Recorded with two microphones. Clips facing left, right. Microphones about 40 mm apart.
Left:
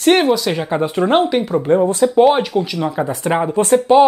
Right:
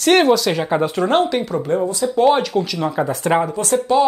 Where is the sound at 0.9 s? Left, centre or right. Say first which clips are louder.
Left 5 dB; centre.